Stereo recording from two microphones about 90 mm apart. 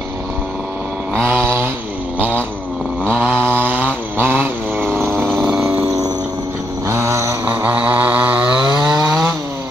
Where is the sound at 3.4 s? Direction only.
20° right (ahead or behind).